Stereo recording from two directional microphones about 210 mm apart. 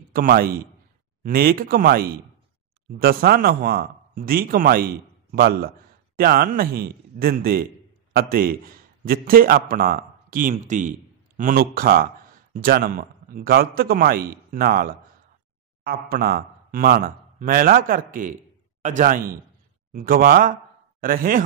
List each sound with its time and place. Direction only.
0.1 s a man's voice: 45° right (ahead or behind)